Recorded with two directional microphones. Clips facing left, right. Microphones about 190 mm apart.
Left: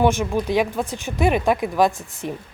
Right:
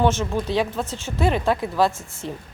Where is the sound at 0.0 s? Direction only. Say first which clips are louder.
Left 2 dB; 15° left (ahead or behind).